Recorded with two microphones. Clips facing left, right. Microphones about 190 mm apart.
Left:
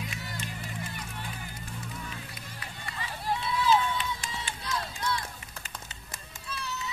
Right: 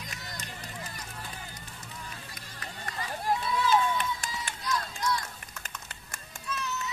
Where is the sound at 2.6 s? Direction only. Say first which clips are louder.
Right 3 dB; 45° right (ahead or behind).